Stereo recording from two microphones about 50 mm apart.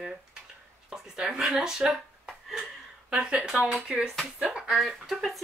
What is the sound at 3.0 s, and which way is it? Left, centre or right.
Speech, centre.